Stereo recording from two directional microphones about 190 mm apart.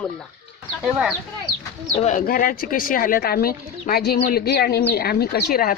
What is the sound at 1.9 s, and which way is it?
Speech, 40° left (ahead or behind).